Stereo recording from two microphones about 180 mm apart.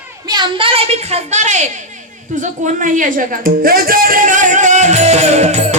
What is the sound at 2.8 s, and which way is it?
Music, 45° right (ahead or behind).